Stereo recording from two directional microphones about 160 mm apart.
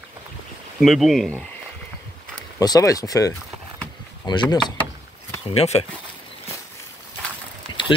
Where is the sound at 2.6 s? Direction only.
20° left (ahead or behind).